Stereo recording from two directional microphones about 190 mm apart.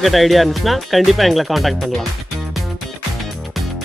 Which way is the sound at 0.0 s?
Centre (ahead or behind).